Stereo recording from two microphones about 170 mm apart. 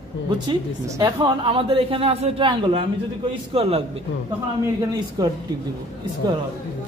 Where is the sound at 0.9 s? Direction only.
25° right (ahead or behind).